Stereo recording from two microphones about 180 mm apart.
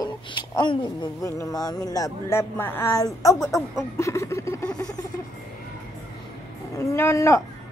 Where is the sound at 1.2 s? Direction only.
20° left (ahead or behind).